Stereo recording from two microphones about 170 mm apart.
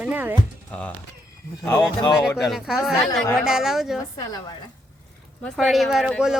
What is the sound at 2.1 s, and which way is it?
Speech, centre (ahead or behind).